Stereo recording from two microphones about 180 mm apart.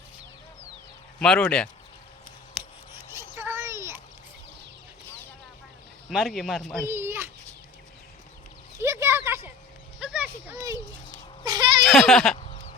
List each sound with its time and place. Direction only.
1.2 s speech: 5° left (ahead or behind)
2.6 s scissors: centre (ahead or behind)
2.9 s a sound: 15° right (ahead or behind)
6.1 s speech: centre (ahead or behind)
6.8 s a child's voice: 15° right (ahead or behind)
8.8 s a sound: 15° right (ahead or behind)
10.5 s speech: 15° right (ahead or behind)
11.4 s a sound: 20° right (ahead or behind)
11.8 s speech: centre (ahead or behind)